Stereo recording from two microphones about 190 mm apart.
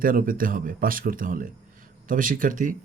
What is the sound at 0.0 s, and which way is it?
A man's voice, 50° right (ahead or behind).